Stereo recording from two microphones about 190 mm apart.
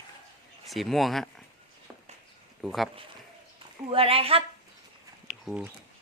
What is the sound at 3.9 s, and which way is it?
Speech, 30° right (ahead or behind).